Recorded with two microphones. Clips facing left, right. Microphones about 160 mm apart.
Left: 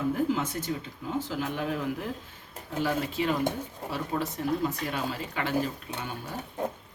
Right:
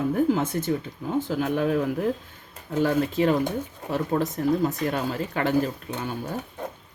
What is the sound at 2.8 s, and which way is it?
Speech, 45° right (ahead or behind).